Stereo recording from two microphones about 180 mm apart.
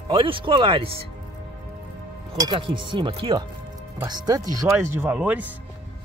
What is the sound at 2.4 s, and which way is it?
Speech, 25° right (ahead or behind).